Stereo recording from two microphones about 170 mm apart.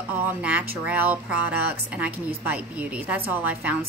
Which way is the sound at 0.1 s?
10° right (ahead or behind).